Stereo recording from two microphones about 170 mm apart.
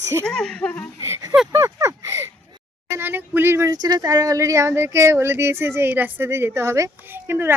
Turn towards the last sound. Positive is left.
turn(degrees=-15)  # may be behind; listen again after turning